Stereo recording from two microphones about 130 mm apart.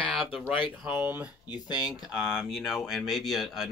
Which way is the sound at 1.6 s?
30° left (ahead or behind).